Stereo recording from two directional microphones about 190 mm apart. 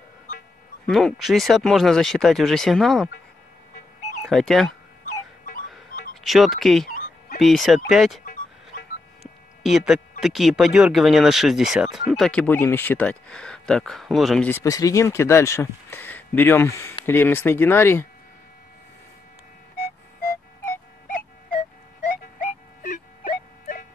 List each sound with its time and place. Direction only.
0.8 s speech: centre (ahead or behind)
4.2 s speech: centre (ahead or behind)
6.2 s speech: centre (ahead or behind)
9.6 s speech: centre (ahead or behind)
14.5 s speech: 20° left (ahead or behind)
22.4 s music: 45° left (ahead or behind)